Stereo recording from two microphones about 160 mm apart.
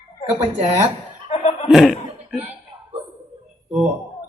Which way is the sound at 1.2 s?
40° left (ahead or behind).